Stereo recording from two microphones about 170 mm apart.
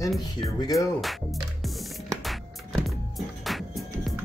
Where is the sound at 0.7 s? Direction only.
Centre (ahead or behind).